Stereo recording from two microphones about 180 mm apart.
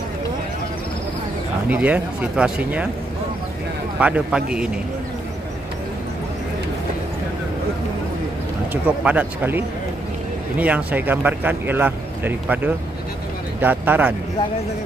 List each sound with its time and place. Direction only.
1.7 s speech: 10° right (ahead or behind)
4.0 s a man's voice: 5° right (ahead or behind)
9.0 s speech: 10° right (ahead or behind)
10.6 s speech: 10° right (ahead or behind)